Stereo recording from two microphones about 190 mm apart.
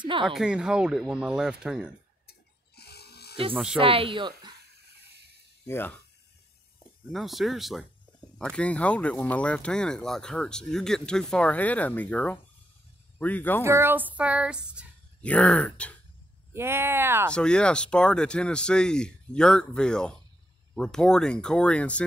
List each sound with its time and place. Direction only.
0.0 s speech: 25° right (ahead or behind)
0.3 s speech: 5° right (ahead or behind)
2.2 s electric toothbrush: 55° left (ahead or behind)
3.5 s speech: 5° right (ahead or behind)
3.8 s speech: 30° right (ahead or behind)
5.7 s speech: 10° left (ahead or behind)
7.1 s speech: centre (ahead or behind)
13.7 s child singing: 10° right (ahead or behind)
15.2 s speech: 5° left (ahead or behind)
16.5 s child singing: 10° right (ahead or behind)
17.3 s speech: 5° left (ahead or behind)